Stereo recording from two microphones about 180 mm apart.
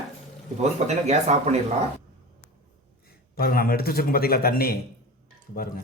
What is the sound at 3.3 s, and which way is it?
Speech, 55° left (ahead or behind).